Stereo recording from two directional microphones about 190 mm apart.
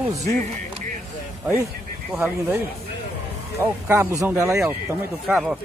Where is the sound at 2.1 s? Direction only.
10° right (ahead or behind).